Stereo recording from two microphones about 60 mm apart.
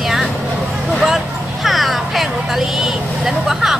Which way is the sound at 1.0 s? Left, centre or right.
Centre.